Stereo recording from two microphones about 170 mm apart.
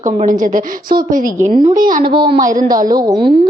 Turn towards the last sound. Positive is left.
turn(degrees=-25)  # may be behind; listen again after turning